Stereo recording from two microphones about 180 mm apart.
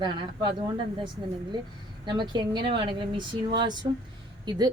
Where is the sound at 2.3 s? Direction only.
25° right (ahead or behind).